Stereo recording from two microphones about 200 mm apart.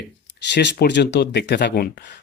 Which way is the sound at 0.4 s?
60° left (ahead or behind).